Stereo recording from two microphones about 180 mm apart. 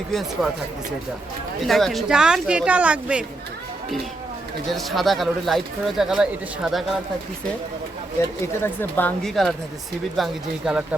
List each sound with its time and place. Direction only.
0.4 s speech: centre (ahead or behind)
1.6 s speech: centre (ahead or behind)
4.7 s speech: centre (ahead or behind)
8.6 s speech: 10° left (ahead or behind)